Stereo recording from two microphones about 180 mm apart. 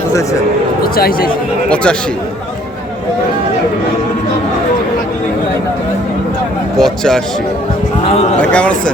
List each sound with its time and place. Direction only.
0.9 s speech: 55° left (ahead or behind)
1.7 s speech: 5° left (ahead or behind)
6.7 s a sound: centre (ahead or behind)
8.4 s speech: 5° left (ahead or behind)